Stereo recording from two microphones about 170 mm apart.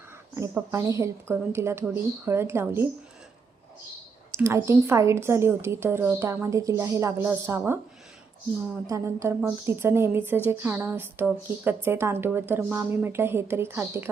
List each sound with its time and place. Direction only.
0.3 s a woman's voice: 15° right (ahead or behind)
4.4 s a woman's voice: 15° right (ahead or behind)
8.9 s a woman's voice: 15° right (ahead or behind)